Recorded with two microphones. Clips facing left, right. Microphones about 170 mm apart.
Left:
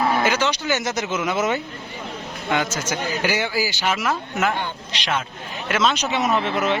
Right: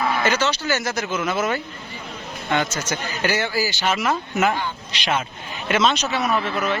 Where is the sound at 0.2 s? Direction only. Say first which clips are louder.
Even; 10° left (ahead or behind).